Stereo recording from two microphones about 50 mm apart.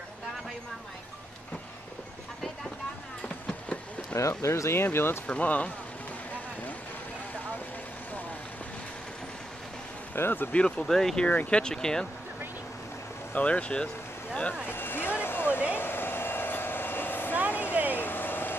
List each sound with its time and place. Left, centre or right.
4.1 s speech: left
4.8 s speech: left
5.2 s speech: left
10.1 s speech: left
10.5 s speech: centre
13.3 s speech: left
14.7 s a sound: left
15.7 s vehicle: left
17.5 s a sound: left